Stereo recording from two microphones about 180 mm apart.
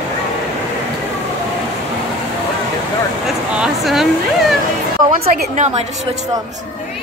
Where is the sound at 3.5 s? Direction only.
5° right (ahead or behind).